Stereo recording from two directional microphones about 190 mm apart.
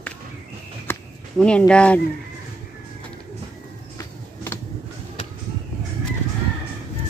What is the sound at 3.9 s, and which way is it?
Music, 10° left (ahead or behind).